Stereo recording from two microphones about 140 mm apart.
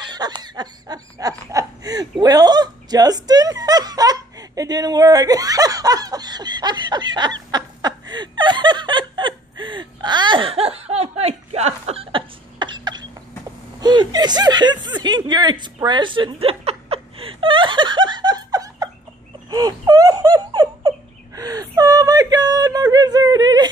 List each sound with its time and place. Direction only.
0.0 s laughter: 30° right (ahead or behind)
13.7 s chuckle: 30° right (ahead or behind)
19.5 s laughter: 30° right (ahead or behind)
21.4 s whimper: 25° right (ahead or behind)